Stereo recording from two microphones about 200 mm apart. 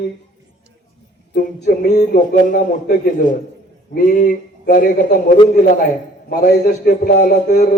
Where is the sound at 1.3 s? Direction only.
45° left (ahead or behind).